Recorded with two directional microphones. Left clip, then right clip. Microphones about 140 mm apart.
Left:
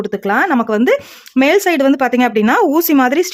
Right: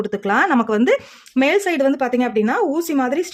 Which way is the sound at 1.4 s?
35° left (ahead or behind).